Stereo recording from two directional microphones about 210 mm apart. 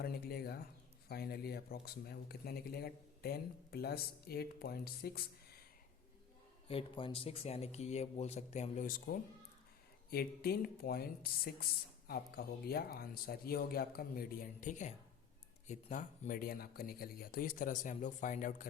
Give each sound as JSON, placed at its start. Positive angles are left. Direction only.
{"t": 0.0, "sound": "speech", "side_deg": 50}
{"t": 6.7, "sound": "speech", "side_deg": 25}